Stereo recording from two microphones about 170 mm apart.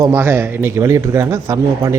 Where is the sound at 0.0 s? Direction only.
15° right (ahead or behind).